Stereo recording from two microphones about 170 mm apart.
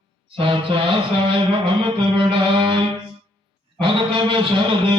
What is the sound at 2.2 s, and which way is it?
Music, 30° right (ahead or behind).